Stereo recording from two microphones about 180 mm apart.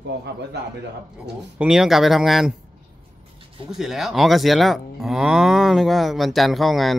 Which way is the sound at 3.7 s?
Centre (ahead or behind).